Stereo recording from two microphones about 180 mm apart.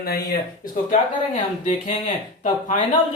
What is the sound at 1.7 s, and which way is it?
Speech, 40° left (ahead or behind).